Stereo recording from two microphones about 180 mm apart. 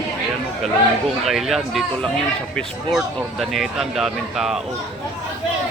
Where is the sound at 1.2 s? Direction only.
Centre (ahead or behind).